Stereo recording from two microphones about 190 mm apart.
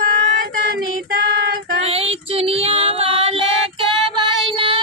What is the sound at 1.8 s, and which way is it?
Child singing, 30° right (ahead or behind).